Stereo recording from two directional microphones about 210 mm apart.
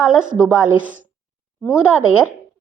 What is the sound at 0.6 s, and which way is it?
Speech, 40° right (ahead or behind).